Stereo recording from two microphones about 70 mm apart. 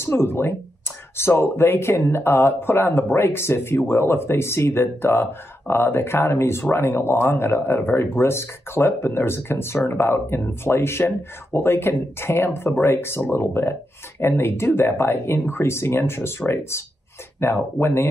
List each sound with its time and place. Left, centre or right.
0.0 s speech: left